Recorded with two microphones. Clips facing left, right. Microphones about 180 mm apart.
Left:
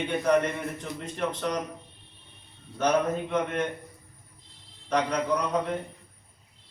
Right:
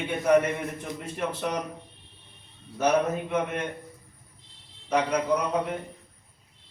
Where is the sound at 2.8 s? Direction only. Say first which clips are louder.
Right 1 dB; 10° right (ahead or behind).